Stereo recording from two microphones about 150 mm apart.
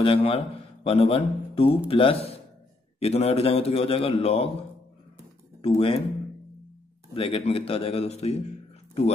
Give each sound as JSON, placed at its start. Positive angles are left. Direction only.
{"t": 0.0, "sound": "a man's voice", "side_deg": 40}
{"t": 5.6, "sound": "a man's voice", "side_deg": 40}
{"t": 7.2, "sound": "a man's voice", "side_deg": 40}